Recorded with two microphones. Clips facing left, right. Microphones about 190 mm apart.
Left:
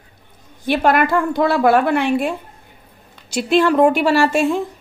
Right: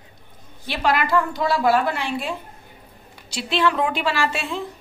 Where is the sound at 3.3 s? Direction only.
45° left (ahead or behind).